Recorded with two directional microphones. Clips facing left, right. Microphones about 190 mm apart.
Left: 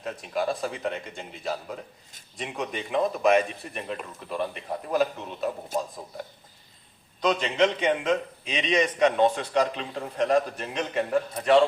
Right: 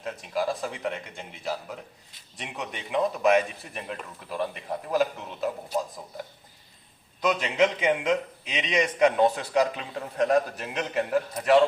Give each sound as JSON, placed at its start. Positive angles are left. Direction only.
{"t": 0.0, "sound": "a man's voice", "side_deg": 0}
{"t": 5.7, "sound": "speech", "side_deg": 50}
{"t": 7.2, "sound": "a man's voice", "side_deg": -5}